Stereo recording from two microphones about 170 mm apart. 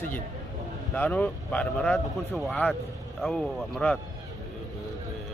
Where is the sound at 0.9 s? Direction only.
10° left (ahead or behind).